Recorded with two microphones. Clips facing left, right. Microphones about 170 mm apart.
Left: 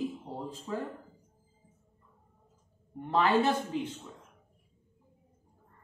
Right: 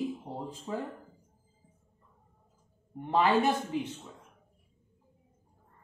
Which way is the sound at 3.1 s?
15° right (ahead or behind).